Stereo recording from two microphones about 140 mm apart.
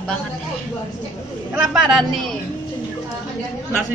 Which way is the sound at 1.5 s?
5° right (ahead or behind).